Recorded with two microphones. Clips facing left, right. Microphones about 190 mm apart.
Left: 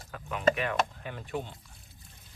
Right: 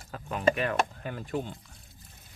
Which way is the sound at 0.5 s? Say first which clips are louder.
Right 2 dB; 45° right (ahead or behind).